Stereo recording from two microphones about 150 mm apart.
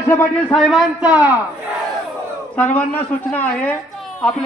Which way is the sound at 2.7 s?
10° left (ahead or behind).